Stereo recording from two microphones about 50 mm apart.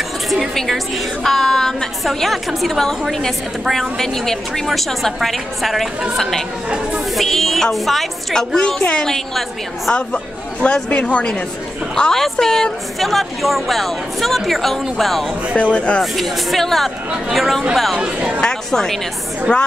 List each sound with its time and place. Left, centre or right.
0.6 s a woman's voice: centre
3.6 s speech: centre
4.0 s speech: centre
7.2 s a woman's voice: centre; by 11.4 s left
11.9 s a woman's voice: centre
15.5 s a woman's voice: left
16.0 s speech: centre
17.9 s speech: right
18.4 s a woman's voice: centre